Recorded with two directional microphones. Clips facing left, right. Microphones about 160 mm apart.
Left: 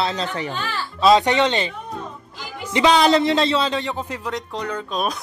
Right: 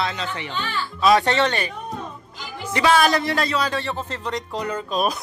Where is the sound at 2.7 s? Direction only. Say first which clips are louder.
Left 2 dB; 20° left (ahead or behind).